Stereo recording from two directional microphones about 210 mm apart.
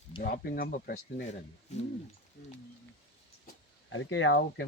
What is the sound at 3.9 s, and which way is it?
Speech, 70° left (ahead or behind).